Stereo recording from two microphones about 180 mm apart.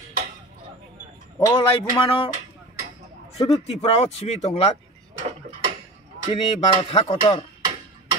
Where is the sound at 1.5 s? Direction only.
30° left (ahead or behind).